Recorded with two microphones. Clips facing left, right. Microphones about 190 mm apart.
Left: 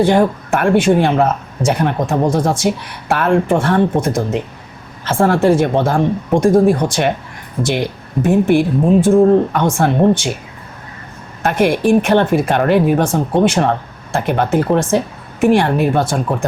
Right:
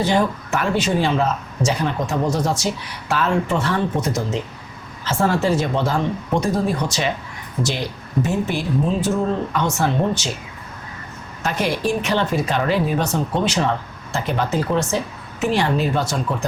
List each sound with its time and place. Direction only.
0.0 s a woman's voice: 55° left (ahead or behind)
11.4 s a woman's voice: 55° left (ahead or behind)